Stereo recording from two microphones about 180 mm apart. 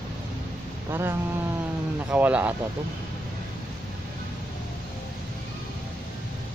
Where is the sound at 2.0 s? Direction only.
10° right (ahead or behind).